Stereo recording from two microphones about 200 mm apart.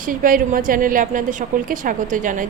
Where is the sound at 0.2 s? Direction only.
45° right (ahead or behind).